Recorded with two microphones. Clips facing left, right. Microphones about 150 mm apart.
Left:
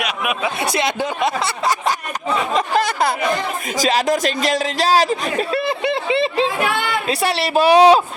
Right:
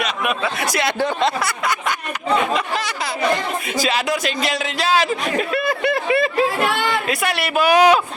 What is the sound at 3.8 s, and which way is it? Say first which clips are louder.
Speech: left 5 dB; 40° left (ahead or behind).